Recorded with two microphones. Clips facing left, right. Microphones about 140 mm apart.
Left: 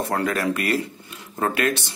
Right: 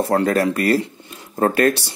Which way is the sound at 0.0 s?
35° right (ahead or behind).